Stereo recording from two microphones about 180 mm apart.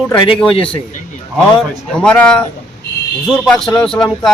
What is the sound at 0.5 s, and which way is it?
Speech, 30° left (ahead or behind).